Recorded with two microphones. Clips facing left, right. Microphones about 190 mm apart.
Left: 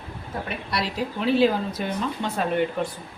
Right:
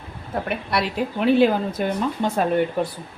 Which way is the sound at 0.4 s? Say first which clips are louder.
Right 4 dB; 55° right (ahead or behind).